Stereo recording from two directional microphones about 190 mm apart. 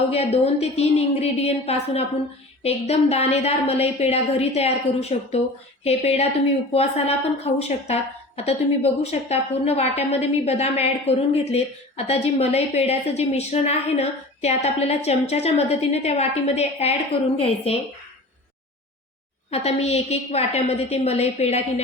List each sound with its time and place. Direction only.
0.1 s a woman's voice: 35° left (ahead or behind)
19.5 s a woman's voice: 35° left (ahead or behind)